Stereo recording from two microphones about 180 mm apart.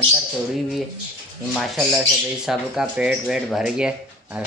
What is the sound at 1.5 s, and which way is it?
Speech, centre (ahead or behind).